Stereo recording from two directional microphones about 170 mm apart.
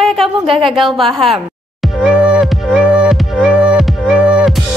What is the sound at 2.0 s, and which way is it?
Music, 5° right (ahead or behind).